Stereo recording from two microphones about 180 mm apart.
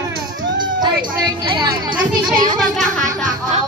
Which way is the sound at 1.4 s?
25° right (ahead or behind).